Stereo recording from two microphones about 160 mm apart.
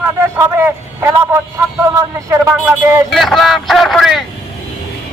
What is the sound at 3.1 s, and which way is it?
Speech, centre (ahead or behind).